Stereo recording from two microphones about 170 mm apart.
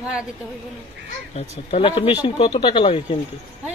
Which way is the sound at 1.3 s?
40° left (ahead or behind).